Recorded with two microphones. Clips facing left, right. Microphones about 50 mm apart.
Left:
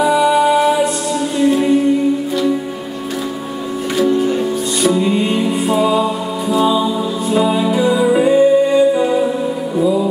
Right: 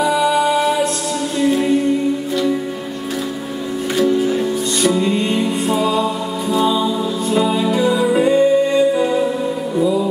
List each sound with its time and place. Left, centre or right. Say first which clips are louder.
0.0 s music: left 3 dB; centre
3.9 s music: left 1 dB; centre